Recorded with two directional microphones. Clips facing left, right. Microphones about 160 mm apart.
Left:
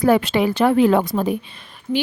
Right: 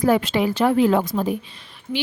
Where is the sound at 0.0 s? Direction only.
65° left (ahead or behind).